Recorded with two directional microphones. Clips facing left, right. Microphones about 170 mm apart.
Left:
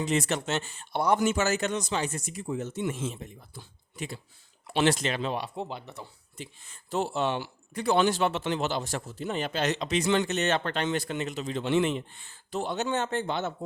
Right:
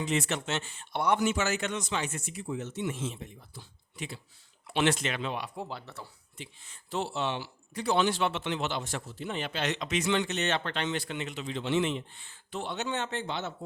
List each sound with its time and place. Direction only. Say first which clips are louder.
0.0 s speech: left 3 dB; 40° left (ahead or behind)
5.5 s speech: left 3 dB; 20° left (ahead or behind)
6.3 s speech: left 4 dB; 45° left (ahead or behind)